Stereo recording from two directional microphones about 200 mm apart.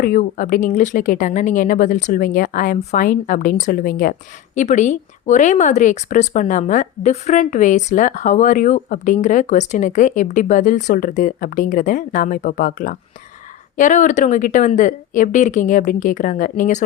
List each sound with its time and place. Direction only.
0.0 s speech: 45° left (ahead or behind)